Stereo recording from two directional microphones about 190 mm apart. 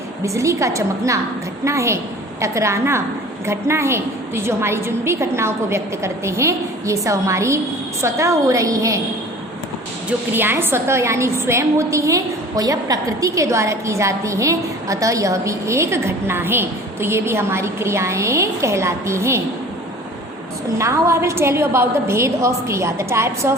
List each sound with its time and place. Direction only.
0.3 s a woman's voice: 15° right (ahead or behind)
10.3 s a woman's voice: 10° right (ahead or behind)
20.7 s a woman's voice: 15° right (ahead or behind)